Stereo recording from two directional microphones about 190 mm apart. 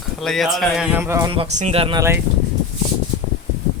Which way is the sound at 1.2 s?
30° right (ahead or behind).